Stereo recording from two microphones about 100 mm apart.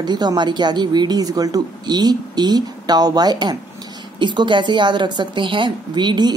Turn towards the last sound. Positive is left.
turn(degrees=-50)  # may be behind; listen again after turning